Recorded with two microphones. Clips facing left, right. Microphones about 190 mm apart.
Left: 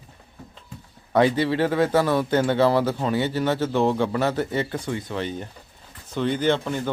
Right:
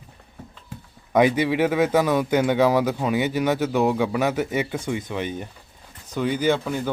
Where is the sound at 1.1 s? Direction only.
15° right (ahead or behind).